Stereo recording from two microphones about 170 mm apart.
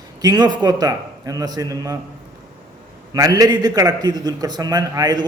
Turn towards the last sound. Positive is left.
turn(degrees=-20)  # may be behind; listen again after turning